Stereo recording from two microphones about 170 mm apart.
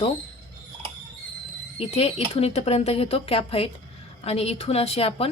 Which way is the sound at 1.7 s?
35° left (ahead or behind).